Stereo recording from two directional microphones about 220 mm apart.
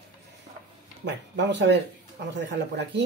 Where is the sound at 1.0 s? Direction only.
50° right (ahead or behind).